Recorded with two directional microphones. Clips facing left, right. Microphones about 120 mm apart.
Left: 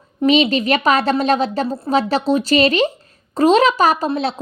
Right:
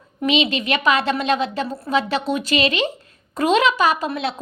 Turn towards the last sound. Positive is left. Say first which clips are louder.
# left 3 dB
turn(degrees=35)  # may be behind; listen again after turning